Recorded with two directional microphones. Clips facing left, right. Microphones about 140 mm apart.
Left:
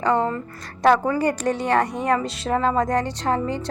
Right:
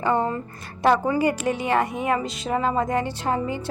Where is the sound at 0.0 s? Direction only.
20° right (ahead or behind).